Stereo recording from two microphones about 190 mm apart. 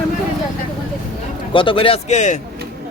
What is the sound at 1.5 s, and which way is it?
Speech, 25° left (ahead or behind).